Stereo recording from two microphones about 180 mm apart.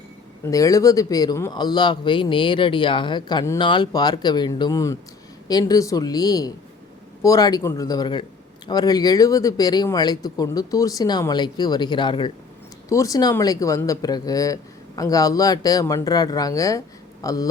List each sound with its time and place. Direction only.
0.4 s speech: 20° left (ahead or behind)